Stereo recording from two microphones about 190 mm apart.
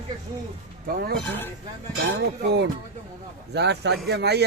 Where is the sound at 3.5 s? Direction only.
60° right (ahead or behind).